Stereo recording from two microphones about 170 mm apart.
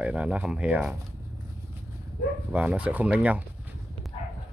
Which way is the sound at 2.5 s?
10° right (ahead or behind).